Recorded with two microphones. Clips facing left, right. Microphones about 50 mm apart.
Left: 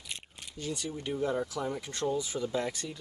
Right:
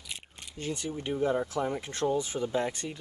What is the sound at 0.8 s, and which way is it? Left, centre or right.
Speech, right.